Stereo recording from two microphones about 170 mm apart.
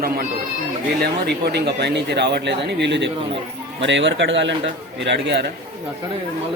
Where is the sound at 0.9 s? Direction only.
70° right (ahead or behind); by 5.5 s 90° right.